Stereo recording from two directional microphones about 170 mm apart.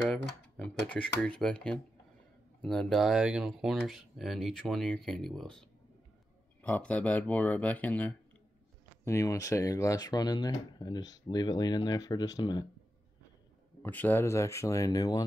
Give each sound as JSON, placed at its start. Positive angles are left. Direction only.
{"t": 0.1, "sound": "speech", "side_deg": 5}
{"t": 13.8, "sound": "speech", "side_deg": 10}